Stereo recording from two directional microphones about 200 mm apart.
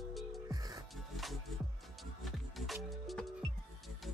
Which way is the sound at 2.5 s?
Centre (ahead or behind).